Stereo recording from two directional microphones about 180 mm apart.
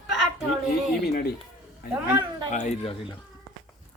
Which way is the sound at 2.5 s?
40° left (ahead or behind).